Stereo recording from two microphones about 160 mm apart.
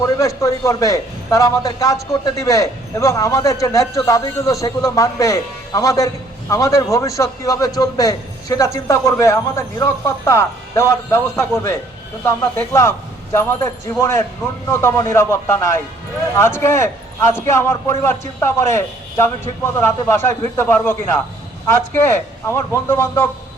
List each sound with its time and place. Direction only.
0.0 s a man's voice: 20° left (ahead or behind)